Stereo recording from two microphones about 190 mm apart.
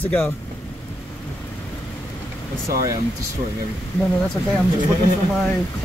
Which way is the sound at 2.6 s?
20° right (ahead or behind).